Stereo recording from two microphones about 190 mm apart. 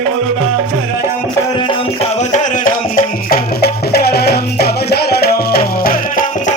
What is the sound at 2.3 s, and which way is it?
Music, 45° left (ahead or behind).